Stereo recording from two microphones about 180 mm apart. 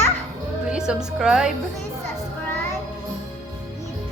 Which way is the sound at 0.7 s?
5° right (ahead or behind).